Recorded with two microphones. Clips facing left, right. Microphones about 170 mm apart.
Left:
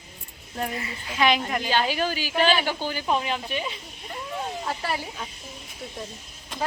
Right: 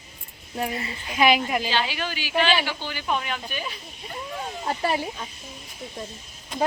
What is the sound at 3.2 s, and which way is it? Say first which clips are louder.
Speech: left 3 dB; 25° left (ahead or behind).